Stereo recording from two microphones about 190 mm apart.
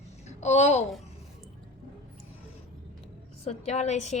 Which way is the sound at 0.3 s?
35° left (ahead or behind).